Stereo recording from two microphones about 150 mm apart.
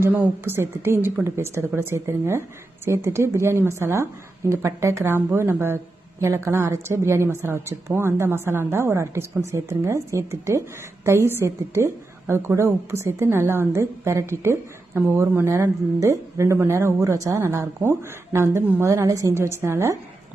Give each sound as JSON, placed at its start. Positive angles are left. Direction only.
{"t": 0.0, "sound": "a woman's voice", "side_deg": -15}